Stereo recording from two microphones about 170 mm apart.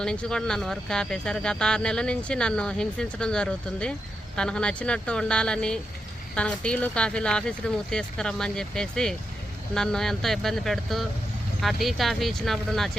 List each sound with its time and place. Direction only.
0.0 s speech: 5° left (ahead or behind)